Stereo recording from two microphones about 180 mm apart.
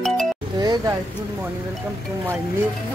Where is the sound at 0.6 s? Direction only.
25° right (ahead or behind).